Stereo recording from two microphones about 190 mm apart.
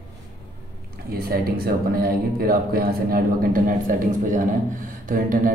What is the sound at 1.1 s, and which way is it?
Speech, 50° right (ahead or behind).